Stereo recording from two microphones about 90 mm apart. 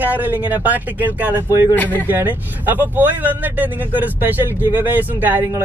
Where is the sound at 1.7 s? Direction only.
20° left (ahead or behind).